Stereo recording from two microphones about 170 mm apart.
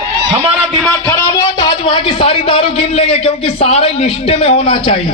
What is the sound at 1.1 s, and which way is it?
A man's voice, 20° left (ahead or behind).